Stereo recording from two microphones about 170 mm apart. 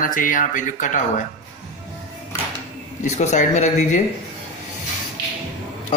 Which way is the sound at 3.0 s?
45° left (ahead or behind).